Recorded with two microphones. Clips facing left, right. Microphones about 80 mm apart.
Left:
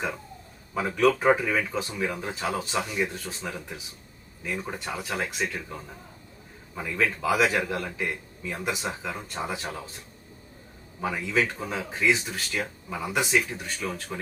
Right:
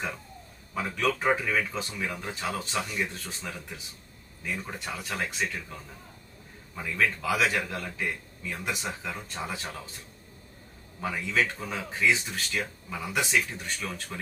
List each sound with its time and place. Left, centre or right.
0.7 s speech: centre
6.7 s speech: centre
11.0 s speech: centre